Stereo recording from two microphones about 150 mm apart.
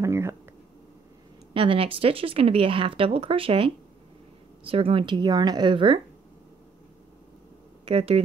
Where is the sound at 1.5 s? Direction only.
35° right (ahead or behind).